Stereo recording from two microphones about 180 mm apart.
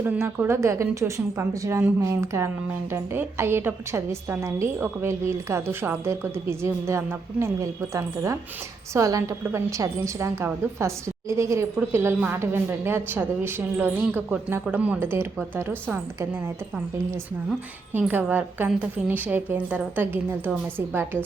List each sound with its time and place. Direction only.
0.0 s a woman's voice: 10° right (ahead or behind)
17.9 s a woman's voice: 10° right (ahead or behind)